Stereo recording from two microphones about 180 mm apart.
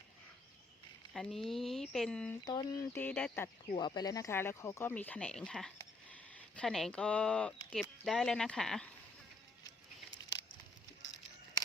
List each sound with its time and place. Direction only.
1.1 s speech: centre (ahead or behind)
2.4 s a sound: 20° left (ahead or behind)
3.0 s speech: 5° left (ahead or behind)
3.8 s speech: 25° left (ahead or behind); by 8.9 s 5° left (ahead or behind)